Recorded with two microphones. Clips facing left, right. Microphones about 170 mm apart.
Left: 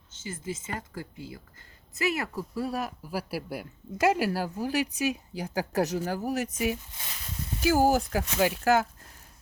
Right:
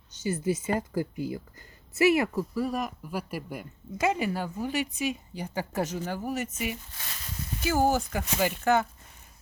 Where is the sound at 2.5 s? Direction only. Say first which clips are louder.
Right 2 dB; 5° left (ahead or behind).